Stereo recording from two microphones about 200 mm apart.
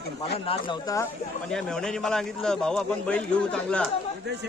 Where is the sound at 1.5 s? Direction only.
5° left (ahead or behind).